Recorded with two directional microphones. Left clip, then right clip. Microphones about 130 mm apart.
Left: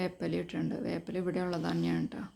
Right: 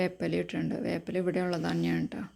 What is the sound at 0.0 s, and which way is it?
A woman's voice, 25° right (ahead or behind).